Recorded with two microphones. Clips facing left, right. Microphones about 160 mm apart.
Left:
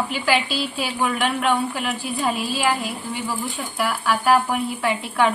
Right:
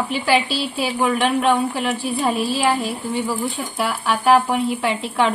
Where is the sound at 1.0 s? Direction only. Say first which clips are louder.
Right 4 dB; 25° right (ahead or behind).